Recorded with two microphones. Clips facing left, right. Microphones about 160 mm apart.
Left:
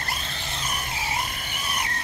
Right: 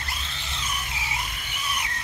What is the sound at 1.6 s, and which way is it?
Squeal, 45° left (ahead or behind).